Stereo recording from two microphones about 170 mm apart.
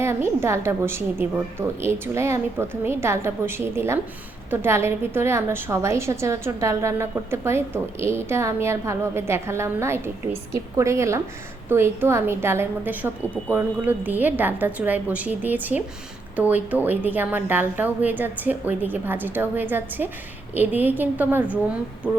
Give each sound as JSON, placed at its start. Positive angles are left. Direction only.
{"t": 0.0, "sound": "a woman's voice", "side_deg": -15}